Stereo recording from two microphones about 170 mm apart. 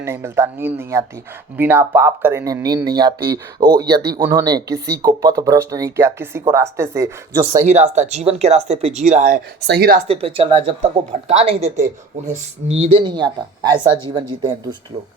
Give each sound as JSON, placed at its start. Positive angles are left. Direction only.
{"t": 0.0, "sound": "speech", "side_deg": -15}
{"t": 7.6, "sound": "speech", "side_deg": -40}
{"t": 9.6, "sound": "speech", "side_deg": -80}
{"t": 10.1, "sound": "speech", "side_deg": -35}